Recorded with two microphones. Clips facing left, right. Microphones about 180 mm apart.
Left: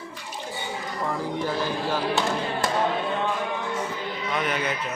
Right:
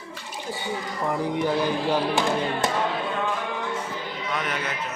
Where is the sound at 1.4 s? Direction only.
15° right (ahead or behind).